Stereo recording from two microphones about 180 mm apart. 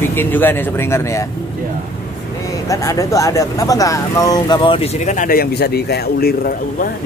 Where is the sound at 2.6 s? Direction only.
20° left (ahead or behind).